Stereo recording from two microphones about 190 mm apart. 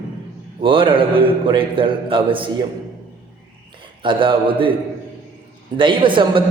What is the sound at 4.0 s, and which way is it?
Speech, 25° right (ahead or behind).